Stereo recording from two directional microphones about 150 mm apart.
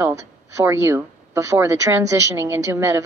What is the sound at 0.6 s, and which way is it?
A woman's voice, 15° right (ahead or behind).